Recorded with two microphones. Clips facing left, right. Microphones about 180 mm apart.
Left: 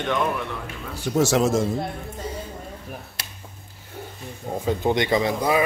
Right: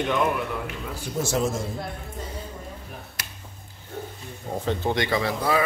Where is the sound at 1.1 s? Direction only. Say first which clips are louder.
Left 6 dB; 85° left.